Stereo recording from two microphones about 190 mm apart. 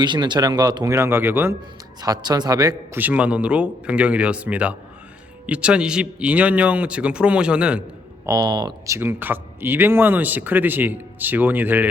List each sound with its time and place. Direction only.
0.0 s speech: 25° right (ahead or behind); by 7.9 s 5° right (ahead or behind)
8.3 s speech: 20° right (ahead or behind)
9.0 s speech: 10° right (ahead or behind)